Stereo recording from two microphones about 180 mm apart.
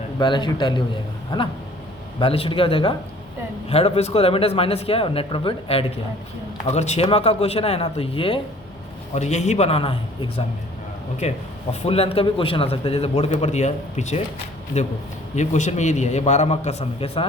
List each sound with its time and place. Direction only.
0.2 s a man's voice: 25° left (ahead or behind)